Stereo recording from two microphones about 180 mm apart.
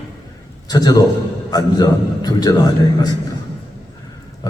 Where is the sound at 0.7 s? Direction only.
20° left (ahead or behind).